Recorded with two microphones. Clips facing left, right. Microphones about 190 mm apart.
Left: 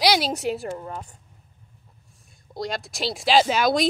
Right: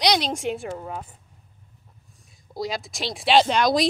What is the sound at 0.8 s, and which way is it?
Speech, 10° right (ahead or behind).